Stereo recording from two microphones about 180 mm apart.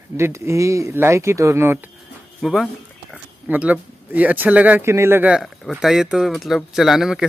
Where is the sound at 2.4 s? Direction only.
Centre (ahead or behind).